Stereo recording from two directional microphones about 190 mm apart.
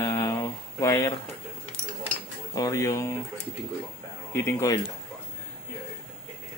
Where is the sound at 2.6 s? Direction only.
15° left (ahead or behind).